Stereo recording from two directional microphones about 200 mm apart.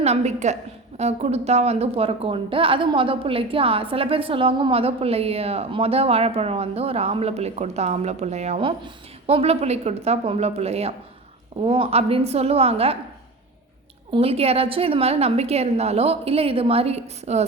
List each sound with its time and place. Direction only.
0.0 s a woman's voice: 35° right (ahead or behind)
14.1 s a woman's voice: 30° right (ahead or behind)